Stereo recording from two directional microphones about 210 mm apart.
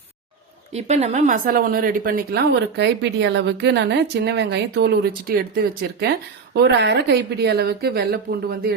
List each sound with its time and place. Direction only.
0.7 s a woman's voice: 30° right (ahead or behind); by 8.7 s 45° right (ahead or behind)